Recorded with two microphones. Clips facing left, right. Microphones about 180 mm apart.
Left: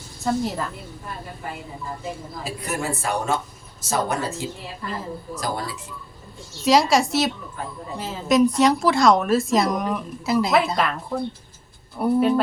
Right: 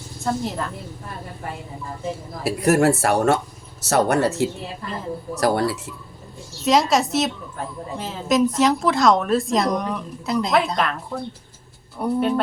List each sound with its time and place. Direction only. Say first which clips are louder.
0.3 s a woman's voice: left 1 dB; centre (ahead or behind)
2.4 s speech: right 12 dB; 75° right (ahead or behind)
6.7 s a woman's voice: even; centre (ahead or behind)